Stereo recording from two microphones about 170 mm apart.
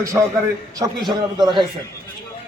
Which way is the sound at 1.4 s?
25° right (ahead or behind).